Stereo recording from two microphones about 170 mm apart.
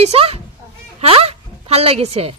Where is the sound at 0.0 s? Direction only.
40° right (ahead or behind).